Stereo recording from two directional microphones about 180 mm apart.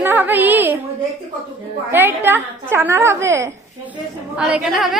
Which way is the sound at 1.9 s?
10° right (ahead or behind).